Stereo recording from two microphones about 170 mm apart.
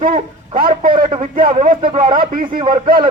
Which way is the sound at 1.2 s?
50° right (ahead or behind).